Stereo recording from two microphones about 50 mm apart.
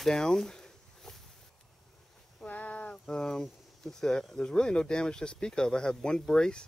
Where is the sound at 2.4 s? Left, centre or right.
Left.